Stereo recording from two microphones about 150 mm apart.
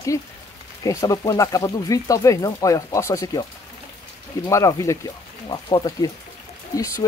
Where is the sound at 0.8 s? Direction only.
20° left (ahead or behind).